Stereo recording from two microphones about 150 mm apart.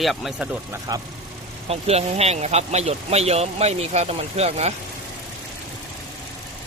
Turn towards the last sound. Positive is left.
turn(degrees=-45)  # may be behind; listen again after turning